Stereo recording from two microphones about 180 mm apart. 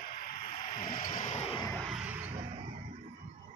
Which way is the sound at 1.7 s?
Centre (ahead or behind).